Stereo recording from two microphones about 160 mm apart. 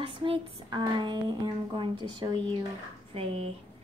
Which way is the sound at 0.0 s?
30° right (ahead or behind).